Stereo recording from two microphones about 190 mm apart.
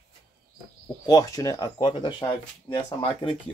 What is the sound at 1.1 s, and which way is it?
Speech, 20° left (ahead or behind).